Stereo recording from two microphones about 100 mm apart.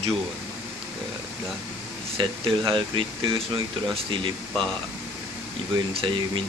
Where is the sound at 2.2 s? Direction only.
55° right (ahead or behind).